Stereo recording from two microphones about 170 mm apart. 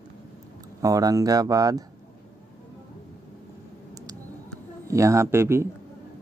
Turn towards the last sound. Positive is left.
turn(degrees=-15)  # may be behind; listen again after turning